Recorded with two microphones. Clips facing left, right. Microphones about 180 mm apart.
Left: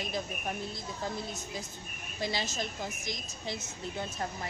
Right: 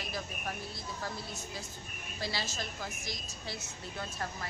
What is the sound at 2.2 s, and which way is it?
A woman's voice, 20° left (ahead or behind).